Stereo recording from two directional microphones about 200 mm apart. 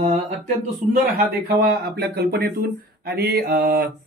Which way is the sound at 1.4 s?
50° right (ahead or behind).